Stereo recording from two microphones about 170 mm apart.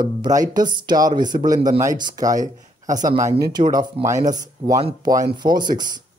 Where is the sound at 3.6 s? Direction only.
50° right (ahead or behind).